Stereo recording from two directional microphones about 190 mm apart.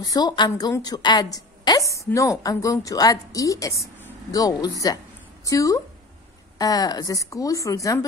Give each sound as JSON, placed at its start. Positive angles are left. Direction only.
{"t": 0.0, "sound": "a woman's voice", "side_deg": 20}